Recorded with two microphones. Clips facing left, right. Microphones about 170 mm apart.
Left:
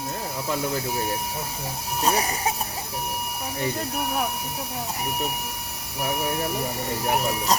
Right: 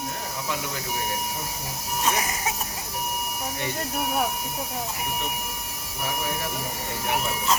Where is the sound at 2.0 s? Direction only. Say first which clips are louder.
Left 3 dB; 35° left (ahead or behind).